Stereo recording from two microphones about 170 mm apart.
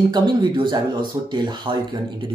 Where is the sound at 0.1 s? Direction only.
25° right (ahead or behind).